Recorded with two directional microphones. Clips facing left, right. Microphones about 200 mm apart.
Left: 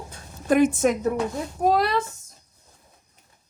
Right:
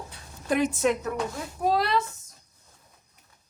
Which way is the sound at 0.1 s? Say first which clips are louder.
Left 6 dB; 50° left (ahead or behind).